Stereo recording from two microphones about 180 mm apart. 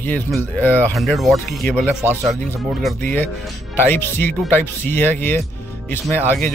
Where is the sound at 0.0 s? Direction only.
10° left (ahead or behind).